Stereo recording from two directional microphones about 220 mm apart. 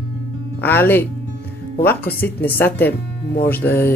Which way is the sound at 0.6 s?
10° left (ahead or behind).